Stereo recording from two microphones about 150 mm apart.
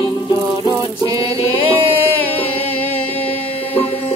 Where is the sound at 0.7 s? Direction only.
25° right (ahead or behind).